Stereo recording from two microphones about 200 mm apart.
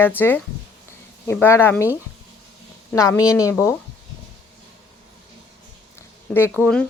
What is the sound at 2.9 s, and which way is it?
Speech, 15° left (ahead or behind).